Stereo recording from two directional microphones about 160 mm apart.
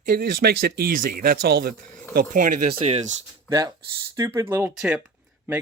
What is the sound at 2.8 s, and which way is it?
Speech, 40° right (ahead or behind).